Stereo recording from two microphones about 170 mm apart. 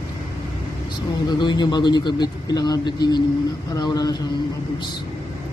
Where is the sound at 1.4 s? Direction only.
25° left (ahead or behind).